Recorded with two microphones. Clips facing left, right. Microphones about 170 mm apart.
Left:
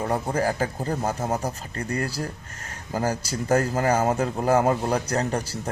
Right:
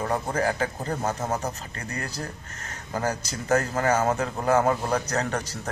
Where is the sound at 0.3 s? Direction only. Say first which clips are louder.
Left 1 dB; 30° left (ahead or behind).